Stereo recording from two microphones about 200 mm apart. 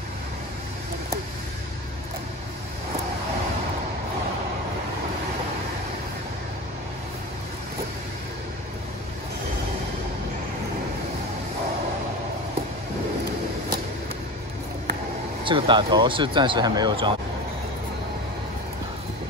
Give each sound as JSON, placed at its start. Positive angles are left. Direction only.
{"t": 15.4, "sound": "speech", "side_deg": -25}